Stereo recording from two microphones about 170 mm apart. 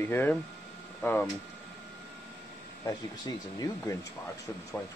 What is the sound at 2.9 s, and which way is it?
Speech, 20° left (ahead or behind).